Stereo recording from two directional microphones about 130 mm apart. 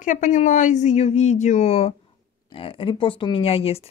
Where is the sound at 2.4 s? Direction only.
45° left (ahead or behind).